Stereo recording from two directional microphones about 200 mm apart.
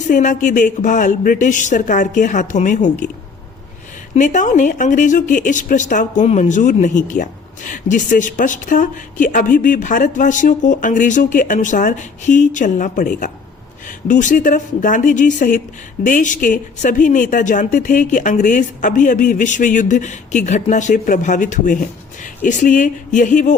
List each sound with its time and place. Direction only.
0.1 s speech: 40° left (ahead or behind)
4.1 s speech: 40° left (ahead or behind)